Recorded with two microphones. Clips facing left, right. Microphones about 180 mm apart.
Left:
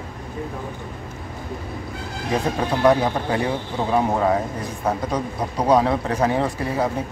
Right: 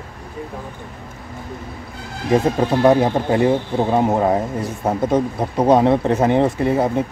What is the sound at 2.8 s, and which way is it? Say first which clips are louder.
Speech: right 2 dB; 25° right (ahead or behind).